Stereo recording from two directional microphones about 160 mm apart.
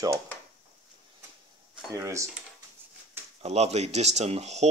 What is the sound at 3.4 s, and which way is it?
Speech, 40° right (ahead or behind).